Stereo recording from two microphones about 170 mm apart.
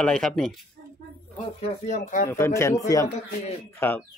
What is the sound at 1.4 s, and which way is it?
Speech, 40° left (ahead or behind).